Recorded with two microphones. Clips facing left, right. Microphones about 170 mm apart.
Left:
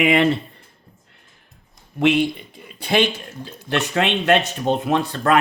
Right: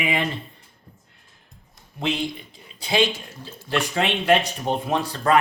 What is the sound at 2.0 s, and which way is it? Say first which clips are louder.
Speech: left 8 dB; 65° left (ahead or behind).